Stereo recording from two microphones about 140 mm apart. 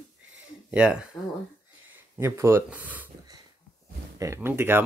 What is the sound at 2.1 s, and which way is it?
Speech, 20° right (ahead or behind).